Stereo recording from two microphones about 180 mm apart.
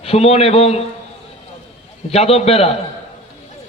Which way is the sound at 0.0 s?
35° left (ahead or behind).